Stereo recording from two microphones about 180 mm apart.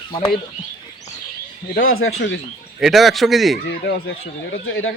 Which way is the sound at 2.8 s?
Centre (ahead or behind).